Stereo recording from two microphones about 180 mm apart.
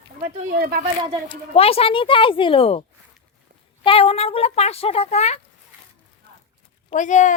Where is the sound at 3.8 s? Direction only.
30° left (ahead or behind).